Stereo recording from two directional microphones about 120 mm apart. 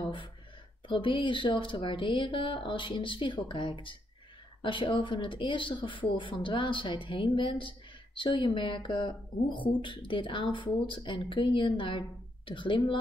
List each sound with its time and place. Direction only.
0.8 s a woman's voice: 45° left (ahead or behind)